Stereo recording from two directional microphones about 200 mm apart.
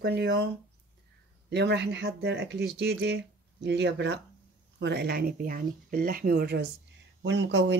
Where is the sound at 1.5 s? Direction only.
60° right (ahead or behind).